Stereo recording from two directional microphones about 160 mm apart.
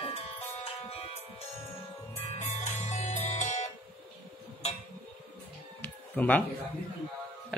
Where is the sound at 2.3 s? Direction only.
45° left (ahead or behind).